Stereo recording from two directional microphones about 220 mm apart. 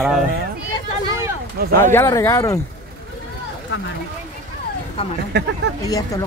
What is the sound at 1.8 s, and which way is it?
Speech, 10° left (ahead or behind).